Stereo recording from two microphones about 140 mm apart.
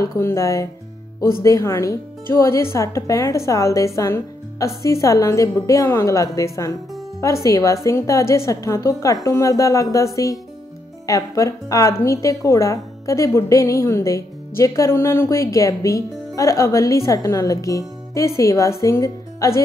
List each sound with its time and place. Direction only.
0.0 s speech: 20° left (ahead or behind)